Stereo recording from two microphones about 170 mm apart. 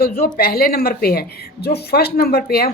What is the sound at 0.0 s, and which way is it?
A woman's voice, 65° left (ahead or behind).